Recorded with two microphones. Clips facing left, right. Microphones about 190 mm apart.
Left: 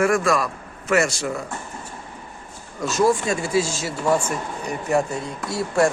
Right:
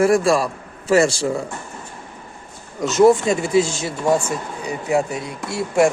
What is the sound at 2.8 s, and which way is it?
Speech, 20° right (ahead or behind).